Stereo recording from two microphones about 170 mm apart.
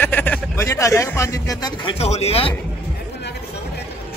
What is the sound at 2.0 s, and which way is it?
Speech, 40° left (ahead or behind).